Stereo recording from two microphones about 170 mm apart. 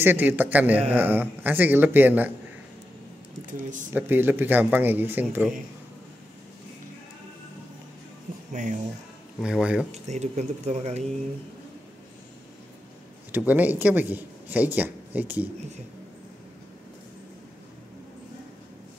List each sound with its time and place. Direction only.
0.0 s speech: 10° right (ahead or behind)
3.5 s speech: 50° right (ahead or behind)
3.9 s speech: 10° right (ahead or behind)
8.5 s speech: 45° right (ahead or behind)
9.4 s speech: 5° right (ahead or behind)
9.9 s speech: 40° right (ahead or behind)
13.5 s speech: 10° right (ahead or behind)